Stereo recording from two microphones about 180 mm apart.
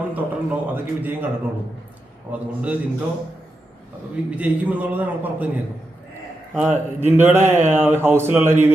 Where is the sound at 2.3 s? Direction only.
10° right (ahead or behind).